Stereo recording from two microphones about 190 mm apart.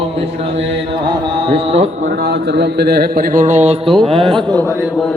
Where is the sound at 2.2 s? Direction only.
60° right (ahead or behind); by 3.8 s 40° right (ahead or behind).